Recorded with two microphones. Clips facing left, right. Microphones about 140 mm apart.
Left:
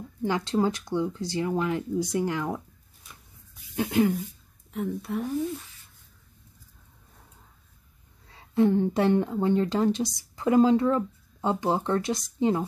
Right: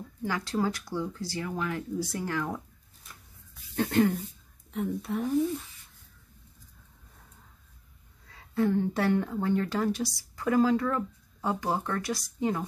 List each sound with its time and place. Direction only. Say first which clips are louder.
0.2 s speech: left 4 dB; 20° left (ahead or behind)
3.7 s a woman's voice: left 1 dB; 5° left (ahead or behind)
8.3 s speech: left 5 dB; 20° left (ahead or behind)